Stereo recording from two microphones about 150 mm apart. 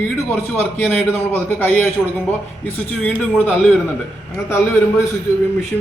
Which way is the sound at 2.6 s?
10° left (ahead or behind).